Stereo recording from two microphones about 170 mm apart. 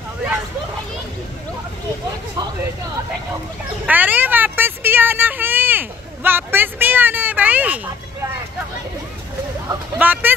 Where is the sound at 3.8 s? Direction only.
10° right (ahead or behind).